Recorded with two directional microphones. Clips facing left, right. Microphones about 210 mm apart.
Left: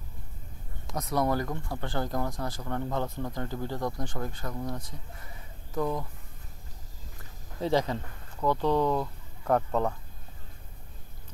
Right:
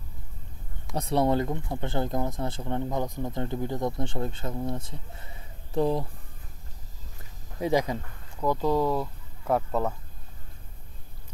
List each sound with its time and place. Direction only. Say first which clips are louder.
0.9 s speech: right 4 dB; 30° right (ahead or behind)
7.6 s speech: right 2 dB; 15° right (ahead or behind)